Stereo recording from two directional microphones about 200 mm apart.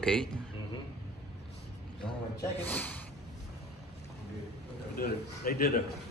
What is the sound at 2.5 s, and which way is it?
Speech, 10° left (ahead or behind).